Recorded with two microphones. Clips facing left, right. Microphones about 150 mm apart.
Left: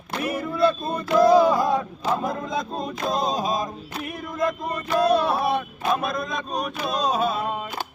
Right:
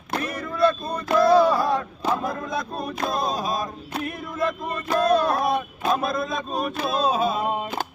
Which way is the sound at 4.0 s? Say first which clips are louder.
Right 2 dB; centre (ahead or behind).